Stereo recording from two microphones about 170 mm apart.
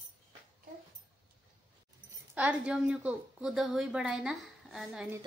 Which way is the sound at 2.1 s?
10° right (ahead or behind).